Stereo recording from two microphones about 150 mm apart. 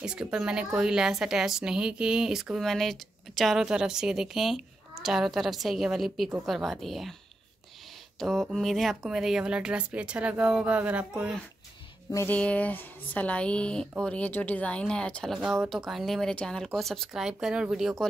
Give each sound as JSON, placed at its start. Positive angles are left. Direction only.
{"t": 0.0, "sound": "a woman's voice", "side_deg": -5}
{"t": 8.2, "sound": "speech", "side_deg": 0}
{"t": 12.1, "sound": "speech", "side_deg": 20}
{"t": 12.4, "sound": "a woman's voice", "side_deg": 10}